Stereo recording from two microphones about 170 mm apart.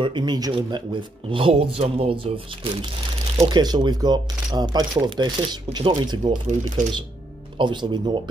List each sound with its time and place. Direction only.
0.0 s speech: 25° right (ahead or behind)
6.8 s speech: 50° right (ahead or behind)
7.5 s speech: 25° right (ahead or behind)